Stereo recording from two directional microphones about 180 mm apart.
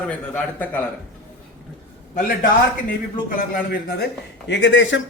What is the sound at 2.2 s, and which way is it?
A man's voice, 50° left (ahead or behind).